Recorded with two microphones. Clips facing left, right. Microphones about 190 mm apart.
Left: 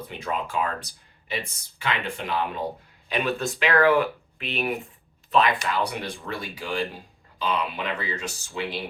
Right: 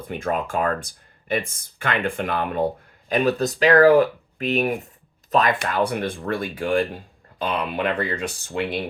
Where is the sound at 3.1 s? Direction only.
40° right (ahead or behind).